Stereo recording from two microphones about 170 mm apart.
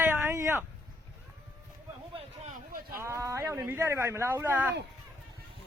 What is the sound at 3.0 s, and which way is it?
Speech, 20° right (ahead or behind).